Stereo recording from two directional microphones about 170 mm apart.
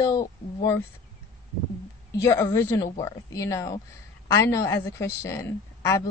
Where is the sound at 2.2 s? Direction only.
15° left (ahead or behind).